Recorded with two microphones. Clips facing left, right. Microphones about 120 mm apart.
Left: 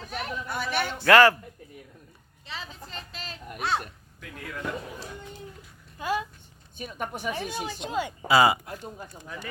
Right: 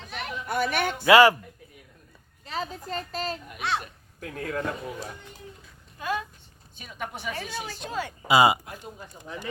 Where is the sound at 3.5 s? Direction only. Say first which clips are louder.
Left 3 dB; 45° left (ahead or behind).